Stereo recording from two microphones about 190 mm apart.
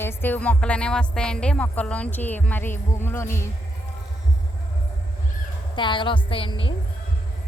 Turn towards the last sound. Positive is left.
turn(degrees=25)  # may be behind; listen again after turning